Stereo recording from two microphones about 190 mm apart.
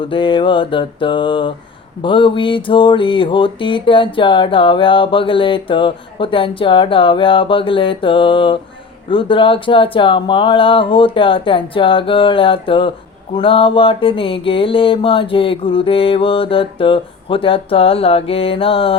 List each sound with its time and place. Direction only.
0.0 s mantra: 25° left (ahead or behind)